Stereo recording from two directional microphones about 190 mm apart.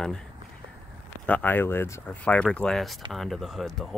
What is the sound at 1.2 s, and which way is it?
Speech, 10° left (ahead or behind).